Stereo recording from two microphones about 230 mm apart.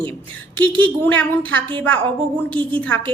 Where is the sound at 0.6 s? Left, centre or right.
Right.